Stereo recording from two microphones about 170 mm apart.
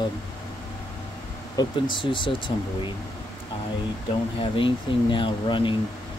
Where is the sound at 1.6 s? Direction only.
30° left (ahead or behind).